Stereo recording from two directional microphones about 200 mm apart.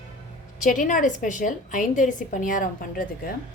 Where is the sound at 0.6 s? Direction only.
40° left (ahead or behind).